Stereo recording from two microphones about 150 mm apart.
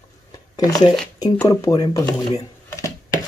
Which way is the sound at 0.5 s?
25° left (ahead or behind).